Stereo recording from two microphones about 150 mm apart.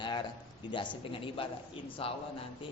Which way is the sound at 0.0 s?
30° left (ahead or behind).